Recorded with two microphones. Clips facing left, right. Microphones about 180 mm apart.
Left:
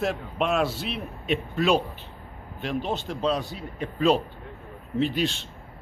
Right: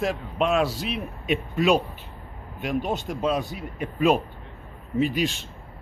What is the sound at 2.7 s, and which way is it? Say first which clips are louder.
Speech: right 2 dB; 45° right (ahead or behind).